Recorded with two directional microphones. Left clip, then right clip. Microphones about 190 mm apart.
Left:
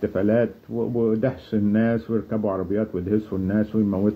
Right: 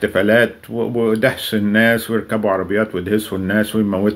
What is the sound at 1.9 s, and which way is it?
Speech, 25° right (ahead or behind).